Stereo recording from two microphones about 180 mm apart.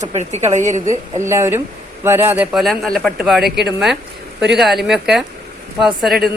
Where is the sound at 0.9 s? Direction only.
15° right (ahead or behind).